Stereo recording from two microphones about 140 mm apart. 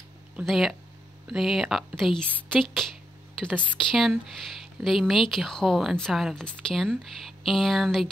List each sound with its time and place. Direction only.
0.5 s a woman's voice: centre (ahead or behind)